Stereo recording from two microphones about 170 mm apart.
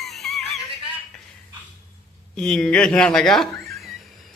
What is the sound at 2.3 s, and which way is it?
Speech, 5° left (ahead or behind).